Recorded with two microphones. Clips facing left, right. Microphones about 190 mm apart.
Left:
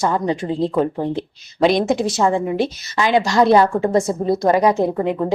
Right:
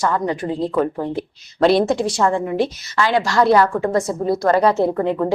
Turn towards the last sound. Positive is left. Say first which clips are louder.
# even
turn(degrees=15)  # may be behind; listen again after turning